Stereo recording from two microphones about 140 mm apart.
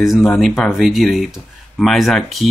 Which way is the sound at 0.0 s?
Centre (ahead or behind).